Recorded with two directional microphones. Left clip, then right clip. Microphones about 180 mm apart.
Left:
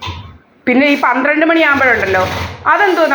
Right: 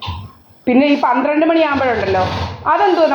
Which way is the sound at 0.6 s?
35° left (ahead or behind).